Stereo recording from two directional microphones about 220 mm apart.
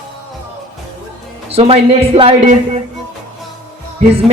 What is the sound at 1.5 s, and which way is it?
Speech, 25° right (ahead or behind).